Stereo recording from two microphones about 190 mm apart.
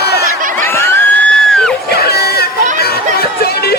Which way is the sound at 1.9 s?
55° left (ahead or behind).